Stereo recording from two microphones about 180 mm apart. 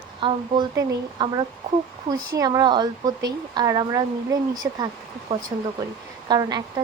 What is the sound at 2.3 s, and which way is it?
Speech, 20° right (ahead or behind).